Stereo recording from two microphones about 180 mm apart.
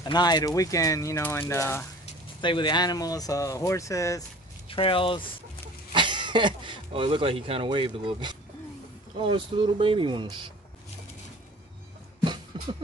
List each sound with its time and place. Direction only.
0.0 s speech: 25° left (ahead or behind)
2.4 s speech: 25° left (ahead or behind)
4.6 s speech: 30° left (ahead or behind)
5.9 s speech: 25° right (ahead or behind)
12.5 s music: 25° right (ahead or behind)